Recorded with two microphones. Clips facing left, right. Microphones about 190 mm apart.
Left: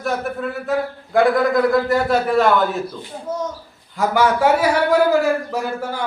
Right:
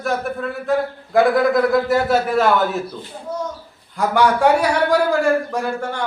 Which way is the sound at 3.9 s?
Centre (ahead or behind).